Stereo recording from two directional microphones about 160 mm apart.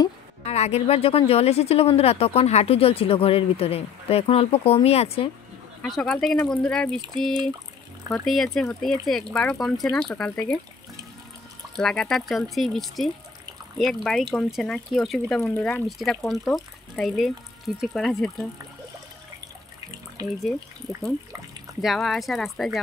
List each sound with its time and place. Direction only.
0.5 s speech: 40° left (ahead or behind)
5.8 s speech: centre (ahead or behind)
8.1 s speech: centre (ahead or behind)
11.7 s speech: 5° left (ahead or behind)
20.2 s speech: 20° right (ahead or behind)
21.8 s speech: centre (ahead or behind)